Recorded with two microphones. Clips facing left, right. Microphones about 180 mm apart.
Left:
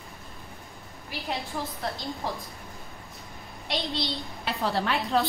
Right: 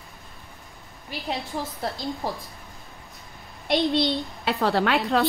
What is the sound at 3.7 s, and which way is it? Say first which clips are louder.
A woman's voice: right 9 dB; 60° right (ahead or behind).